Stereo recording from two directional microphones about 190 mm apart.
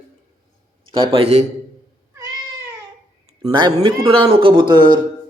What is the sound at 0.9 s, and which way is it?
Speech, 25° right (ahead or behind).